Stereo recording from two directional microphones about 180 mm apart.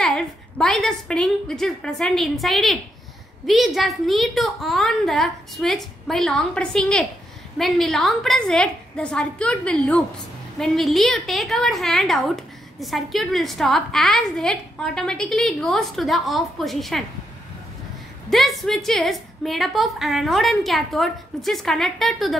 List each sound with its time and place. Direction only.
0.6 s a woman's voice: 5° left (ahead or behind)
18.3 s a woman's voice: centre (ahead or behind)